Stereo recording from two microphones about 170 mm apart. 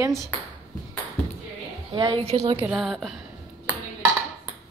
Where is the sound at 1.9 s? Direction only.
30° right (ahead or behind).